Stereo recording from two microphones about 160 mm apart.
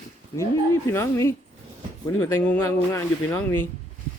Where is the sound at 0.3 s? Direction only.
15° left (ahead or behind).